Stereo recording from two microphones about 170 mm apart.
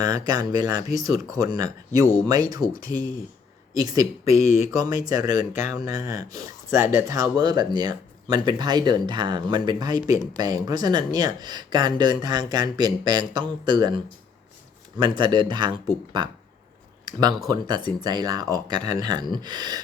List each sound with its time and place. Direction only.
0.0 s speech: 20° right (ahead or behind)
3.0 s speech: 55° left (ahead or behind)
3.8 s speech: 20° right (ahead or behind)
14.9 s speech: 25° right (ahead or behind)